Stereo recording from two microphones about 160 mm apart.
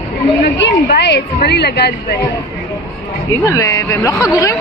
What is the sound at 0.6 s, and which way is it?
A woman's voice, 90° left.